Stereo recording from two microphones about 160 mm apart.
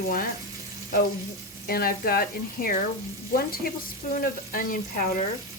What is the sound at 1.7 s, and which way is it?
Speech, 70° left (ahead or behind).